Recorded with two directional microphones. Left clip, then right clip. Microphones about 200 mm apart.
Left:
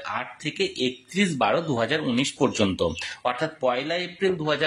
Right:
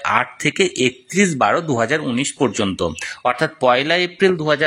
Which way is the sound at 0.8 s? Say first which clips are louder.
Right 8 dB; 25° right (ahead or behind).